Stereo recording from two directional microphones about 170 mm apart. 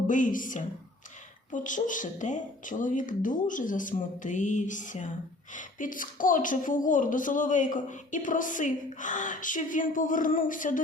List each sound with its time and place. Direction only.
0.1 s a woman's voice: 50° left (ahead or behind)